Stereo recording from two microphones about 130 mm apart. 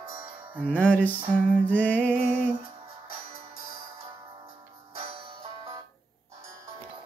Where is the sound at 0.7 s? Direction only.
10° left (ahead or behind).